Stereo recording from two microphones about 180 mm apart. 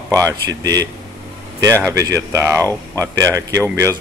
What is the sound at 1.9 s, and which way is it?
A man's voice, 15° right (ahead or behind).